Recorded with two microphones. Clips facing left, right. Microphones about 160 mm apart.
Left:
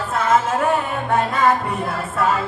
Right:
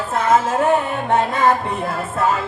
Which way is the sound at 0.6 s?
25° right (ahead or behind).